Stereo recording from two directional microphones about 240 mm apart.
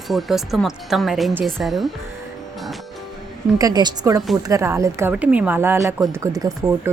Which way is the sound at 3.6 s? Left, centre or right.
Centre.